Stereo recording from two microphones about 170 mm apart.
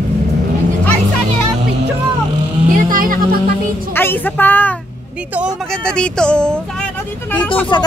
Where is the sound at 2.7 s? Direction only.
55° right (ahead or behind).